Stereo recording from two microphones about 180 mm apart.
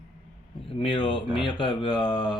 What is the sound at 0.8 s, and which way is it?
Mantra, 30° left (ahead or behind).